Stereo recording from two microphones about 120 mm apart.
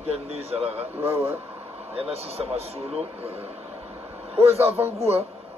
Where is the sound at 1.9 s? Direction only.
55° right (ahead or behind).